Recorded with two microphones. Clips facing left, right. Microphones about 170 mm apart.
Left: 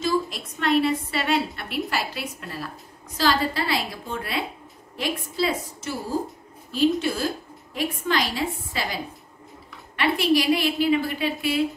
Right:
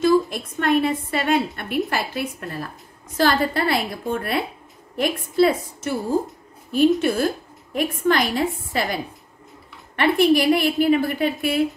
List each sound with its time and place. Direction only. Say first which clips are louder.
0.0 s a woman's voice: right 7 dB; 50° right (ahead or behind)